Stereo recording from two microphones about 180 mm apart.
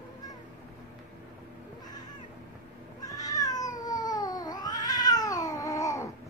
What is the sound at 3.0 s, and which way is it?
Cat, 20° left (ahead or behind).